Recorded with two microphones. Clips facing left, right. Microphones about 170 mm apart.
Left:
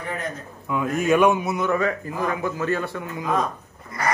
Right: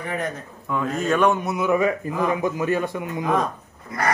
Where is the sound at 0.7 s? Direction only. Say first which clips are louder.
Left 2 dB; 10° left (ahead or behind).